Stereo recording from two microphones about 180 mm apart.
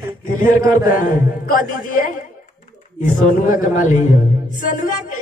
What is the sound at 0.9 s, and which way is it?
Speech, 50° left (ahead or behind).